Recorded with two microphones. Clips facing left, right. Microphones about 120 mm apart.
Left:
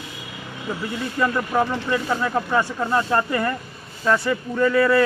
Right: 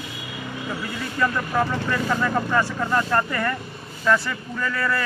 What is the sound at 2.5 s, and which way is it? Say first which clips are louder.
Speech: left 1 dB; 15° left (ahead or behind).